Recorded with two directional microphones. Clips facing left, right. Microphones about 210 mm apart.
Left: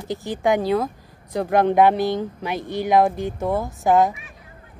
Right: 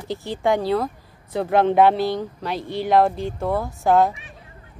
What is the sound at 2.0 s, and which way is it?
Speech, 20° left (ahead or behind).